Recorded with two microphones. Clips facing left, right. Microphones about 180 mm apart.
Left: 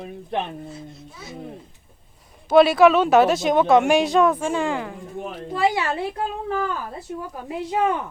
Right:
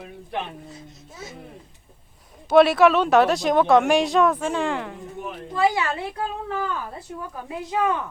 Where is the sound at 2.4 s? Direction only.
Centre (ahead or behind).